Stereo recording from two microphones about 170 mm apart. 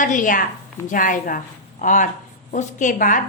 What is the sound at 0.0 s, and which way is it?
A woman's voice, 50° left (ahead or behind).